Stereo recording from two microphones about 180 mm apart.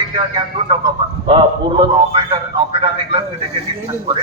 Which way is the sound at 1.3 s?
30° right (ahead or behind).